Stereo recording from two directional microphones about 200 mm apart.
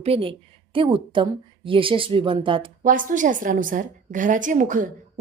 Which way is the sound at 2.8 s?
40° right (ahead or behind).